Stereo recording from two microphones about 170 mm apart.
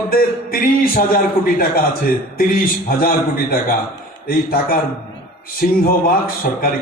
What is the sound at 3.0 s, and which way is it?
Speech, 60° left (ahead or behind).